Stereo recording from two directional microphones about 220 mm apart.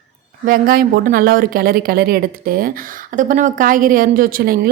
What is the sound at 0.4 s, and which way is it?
A woman's voice, 40° right (ahead or behind).